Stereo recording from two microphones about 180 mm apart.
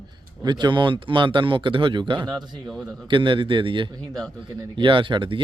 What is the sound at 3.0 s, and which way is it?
Speech, 25° right (ahead or behind).